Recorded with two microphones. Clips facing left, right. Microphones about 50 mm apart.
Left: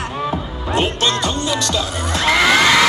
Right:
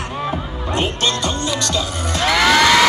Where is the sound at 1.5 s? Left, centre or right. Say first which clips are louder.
Left 1 dB; centre.